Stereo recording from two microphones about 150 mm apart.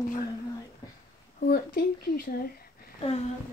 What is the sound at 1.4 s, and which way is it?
A woman's voice, 75° left (ahead or behind).